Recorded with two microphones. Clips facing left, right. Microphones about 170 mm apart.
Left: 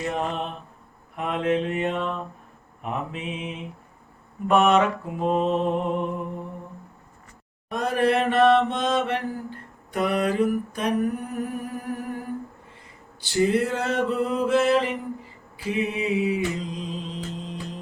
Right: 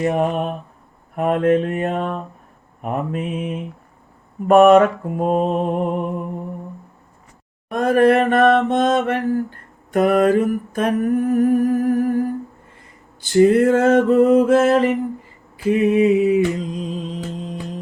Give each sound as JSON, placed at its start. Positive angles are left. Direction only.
{"t": 0.0, "sound": "mantra", "side_deg": -55}
{"t": 7.7, "sound": "mantra", "side_deg": -50}
{"t": 13.6, "sound": "mantra", "side_deg": -50}